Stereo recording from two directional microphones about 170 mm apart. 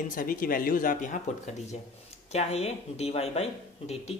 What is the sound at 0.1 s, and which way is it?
Speech, 55° left (ahead or behind).